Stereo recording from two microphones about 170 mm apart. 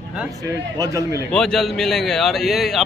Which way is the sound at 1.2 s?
Centre (ahead or behind).